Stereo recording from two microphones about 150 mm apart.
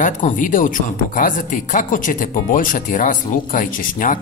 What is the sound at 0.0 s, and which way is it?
Speech, 60° left (ahead or behind).